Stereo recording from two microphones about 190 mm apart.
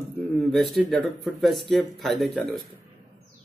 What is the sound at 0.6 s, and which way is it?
Speech, centre (ahead or behind).